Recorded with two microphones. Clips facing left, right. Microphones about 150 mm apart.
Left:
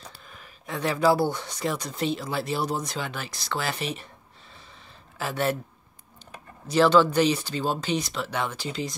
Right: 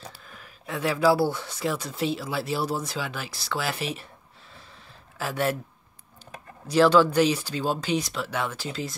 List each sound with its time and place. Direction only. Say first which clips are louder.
0.3 s speech: even; 5° right (ahead or behind)
5.2 s speech: even; 5° right (ahead or behind)
6.7 s speech: right 1 dB; 5° right (ahead or behind)